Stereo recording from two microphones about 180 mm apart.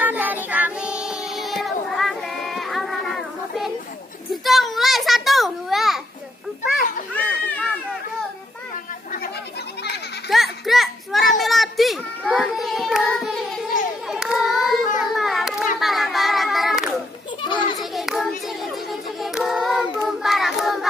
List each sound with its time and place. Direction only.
0.0 s child singing: 10° right (ahead or behind)
4.3 s a sound: centre (ahead or behind)
7.2 s a sound: 10° left (ahead or behind)
10.3 s children playing: centre (ahead or behind)
14.0 s child singing: centre (ahead or behind)
15.1 s a sound: centre (ahead or behind)
17.4 s children playing: 25° left (ahead or behind)
17.7 s hands: centre (ahead or behind)
18.9 s child singing: centre (ahead or behind)